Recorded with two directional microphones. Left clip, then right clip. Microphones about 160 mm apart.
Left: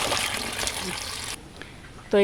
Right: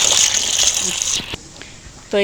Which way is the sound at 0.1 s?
20° left (ahead or behind).